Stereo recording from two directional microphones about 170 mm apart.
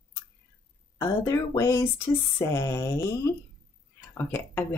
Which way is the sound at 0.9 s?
15° left (ahead or behind).